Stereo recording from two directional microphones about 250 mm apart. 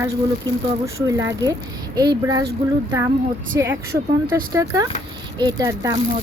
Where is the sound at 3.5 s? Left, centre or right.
Centre.